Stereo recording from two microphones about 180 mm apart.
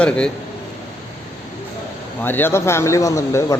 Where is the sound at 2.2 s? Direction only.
10° left (ahead or behind).